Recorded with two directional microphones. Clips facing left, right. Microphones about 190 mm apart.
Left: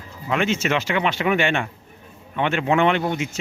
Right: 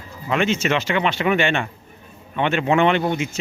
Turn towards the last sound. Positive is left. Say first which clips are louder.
# right 2 dB
turn(degrees=0)  # may be behind; listen again after turning